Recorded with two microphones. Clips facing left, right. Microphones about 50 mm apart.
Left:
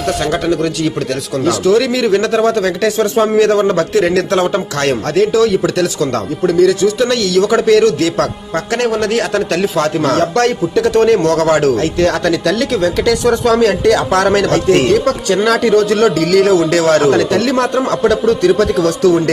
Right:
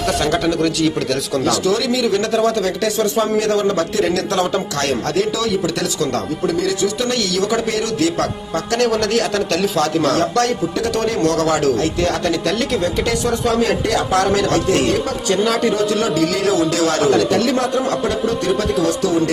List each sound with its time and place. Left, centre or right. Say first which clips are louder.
0.2 s speech: left 2 dB; centre
1.5 s speech: left 7 dB; left
1.8 s a man's voice: left 4 dB; left
6.6 s a man's voice: left 12 dB; left
9.0 s a man's voice: left 3 dB; left
11.8 s speech: left 4 dB; left
16.4 s a man's voice: left 5 dB; left
17.3 s a man's voice: left 3 dB; left